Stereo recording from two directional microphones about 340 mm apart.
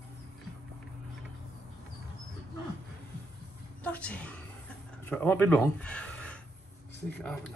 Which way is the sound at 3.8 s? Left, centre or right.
Centre.